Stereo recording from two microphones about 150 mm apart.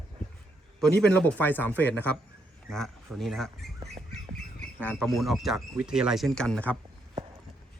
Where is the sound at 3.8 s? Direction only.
45° right (ahead or behind).